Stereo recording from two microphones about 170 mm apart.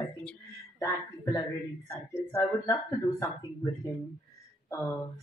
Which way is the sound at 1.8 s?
20° left (ahead or behind).